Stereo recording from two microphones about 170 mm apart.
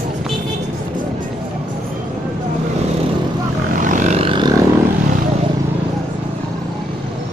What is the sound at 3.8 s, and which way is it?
Vehicle, 50° right (ahead or behind).